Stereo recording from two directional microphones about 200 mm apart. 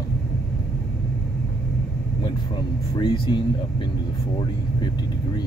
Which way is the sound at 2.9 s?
25° left (ahead or behind).